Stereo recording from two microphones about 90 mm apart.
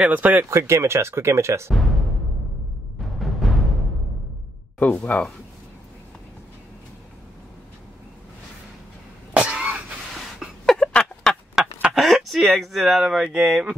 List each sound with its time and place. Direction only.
0.0 s speech: 20° right (ahead or behind)
0.5 s speech: 30° right (ahead or behind)
1.7 s speech: centre (ahead or behind)
3.0 s timpani: centre (ahead or behind)
5.1 s speech: 15° left (ahead or behind)
9.3 s cough: 15° right (ahead or behind)
10.1 s a sound: centre (ahead or behind)
11.6 s duck: 5° right (ahead or behind)
11.9 s speech: centre (ahead or behind)